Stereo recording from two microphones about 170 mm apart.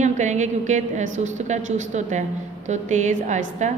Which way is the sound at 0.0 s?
45° right (ahead or behind).